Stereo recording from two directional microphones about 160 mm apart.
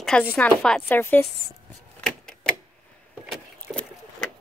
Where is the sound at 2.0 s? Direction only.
5° left (ahead or behind).